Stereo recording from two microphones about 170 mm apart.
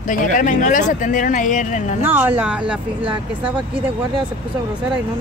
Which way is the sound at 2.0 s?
10° right (ahead or behind).